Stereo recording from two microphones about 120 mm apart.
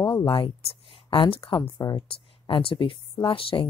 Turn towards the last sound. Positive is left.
turn(degrees=50)  # may be behind; listen again after turning